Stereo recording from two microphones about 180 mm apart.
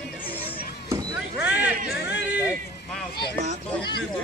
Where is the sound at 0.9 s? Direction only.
10° right (ahead or behind).